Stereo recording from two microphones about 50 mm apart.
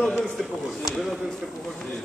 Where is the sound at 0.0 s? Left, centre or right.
Centre.